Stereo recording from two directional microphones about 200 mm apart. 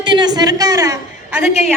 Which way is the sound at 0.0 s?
20° right (ahead or behind).